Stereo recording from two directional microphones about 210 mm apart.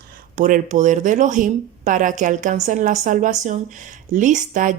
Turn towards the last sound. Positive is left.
turn(degrees=-40)  # may be behind; listen again after turning